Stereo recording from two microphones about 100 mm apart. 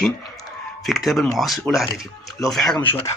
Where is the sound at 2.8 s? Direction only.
20° left (ahead or behind).